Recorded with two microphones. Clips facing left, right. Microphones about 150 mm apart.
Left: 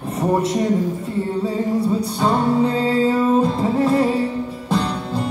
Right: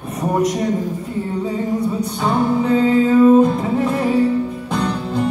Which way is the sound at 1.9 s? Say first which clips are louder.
Even; 30° left (ahead or behind).